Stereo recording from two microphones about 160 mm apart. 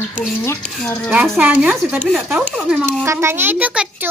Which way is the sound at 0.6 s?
5° left (ahead or behind).